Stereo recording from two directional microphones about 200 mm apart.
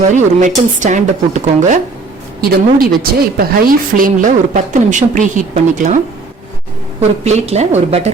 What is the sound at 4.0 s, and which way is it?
A woman's voice, 40° right (ahead or behind).